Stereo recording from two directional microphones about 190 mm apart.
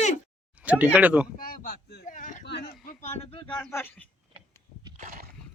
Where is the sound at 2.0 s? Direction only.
40° left (ahead or behind).